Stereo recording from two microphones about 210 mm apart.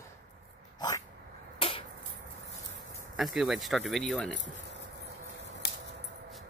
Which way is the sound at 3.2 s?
Centre (ahead or behind).